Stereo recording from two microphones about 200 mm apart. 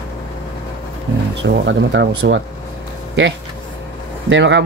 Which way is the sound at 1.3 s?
65° right (ahead or behind).